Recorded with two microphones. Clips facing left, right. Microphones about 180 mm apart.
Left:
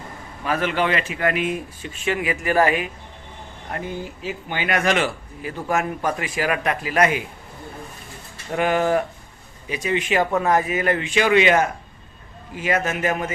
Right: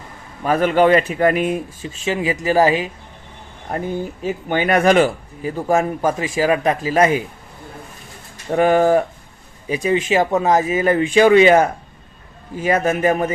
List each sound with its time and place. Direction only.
0.4 s speech: 40° right (ahead or behind)
2.0 s speech: 25° right (ahead or behind)
4.2 s speech: 45° right (ahead or behind)
8.5 s speech: 40° right (ahead or behind)